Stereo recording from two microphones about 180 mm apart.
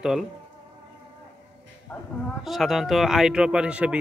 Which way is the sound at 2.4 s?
Centre (ahead or behind).